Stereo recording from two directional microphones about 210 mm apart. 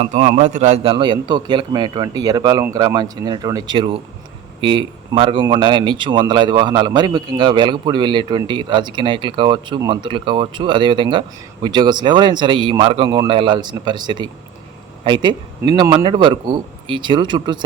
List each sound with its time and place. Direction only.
0.0 s speech: 35° right (ahead or behind)